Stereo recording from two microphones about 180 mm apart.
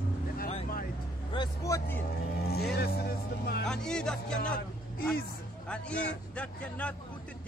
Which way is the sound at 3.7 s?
5° left (ahead or behind).